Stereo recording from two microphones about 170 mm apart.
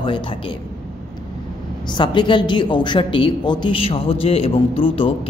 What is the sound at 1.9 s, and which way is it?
Speech, 25° left (ahead or behind).